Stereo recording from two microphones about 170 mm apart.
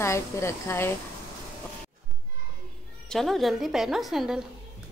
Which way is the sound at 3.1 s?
Centre (ahead or behind).